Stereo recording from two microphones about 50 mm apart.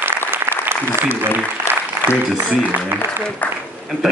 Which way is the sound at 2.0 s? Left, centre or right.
Right.